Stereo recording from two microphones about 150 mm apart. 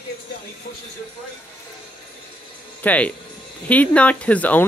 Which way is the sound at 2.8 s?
10° left (ahead or behind).